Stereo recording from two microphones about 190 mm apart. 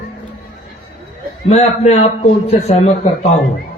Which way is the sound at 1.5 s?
35° left (ahead or behind).